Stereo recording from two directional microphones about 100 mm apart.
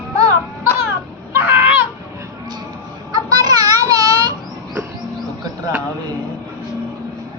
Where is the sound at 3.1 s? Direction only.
40° right (ahead or behind).